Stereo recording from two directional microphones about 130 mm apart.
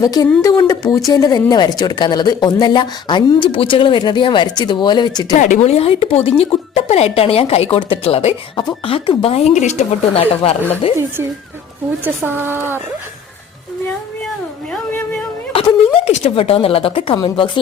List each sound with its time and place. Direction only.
0.0 s a woman's voice: 30° left (ahead or behind)
5.5 s speech: 55° left (ahead or behind)
12.0 s speech: 15° right (ahead or behind)
16.0 s speech: 55° left (ahead or behind); by 17.5 s 40° left (ahead or behind)